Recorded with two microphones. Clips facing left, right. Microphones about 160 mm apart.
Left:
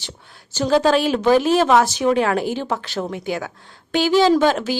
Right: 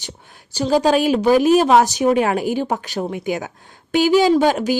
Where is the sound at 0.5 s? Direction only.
10° right (ahead or behind).